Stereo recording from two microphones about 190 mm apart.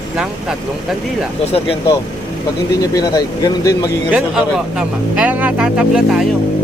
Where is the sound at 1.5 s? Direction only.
30° left (ahead or behind).